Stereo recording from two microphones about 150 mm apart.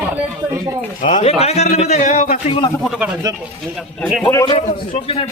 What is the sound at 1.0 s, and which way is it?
A man's voice, 55° left (ahead or behind).